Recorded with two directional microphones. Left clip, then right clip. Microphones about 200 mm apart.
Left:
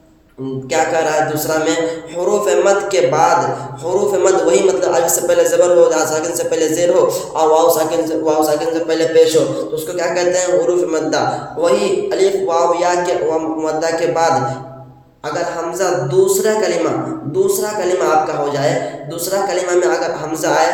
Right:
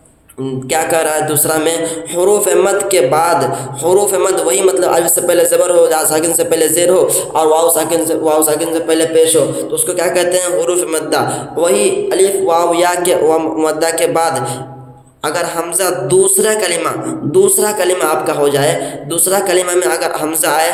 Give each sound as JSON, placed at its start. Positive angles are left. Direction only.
{"t": 0.7, "sound": "a man's voice", "side_deg": -40}
{"t": 15.3, "sound": "a man's voice", "side_deg": -50}